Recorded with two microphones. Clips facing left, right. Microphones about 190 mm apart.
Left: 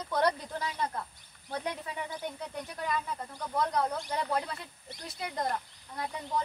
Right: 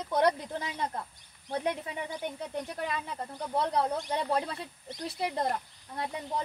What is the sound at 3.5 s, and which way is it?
Speech, 30° right (ahead or behind).